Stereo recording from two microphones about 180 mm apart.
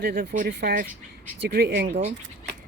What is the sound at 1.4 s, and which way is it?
Speech, 65° right (ahead or behind).